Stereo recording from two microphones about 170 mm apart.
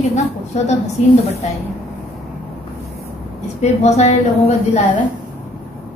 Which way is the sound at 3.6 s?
40° left (ahead or behind).